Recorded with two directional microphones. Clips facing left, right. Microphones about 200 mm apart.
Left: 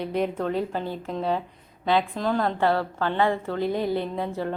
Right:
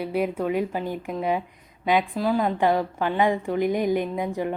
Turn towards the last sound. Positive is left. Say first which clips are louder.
# right 2 dB
turn(degrees=-15)  # may be behind; listen again after turning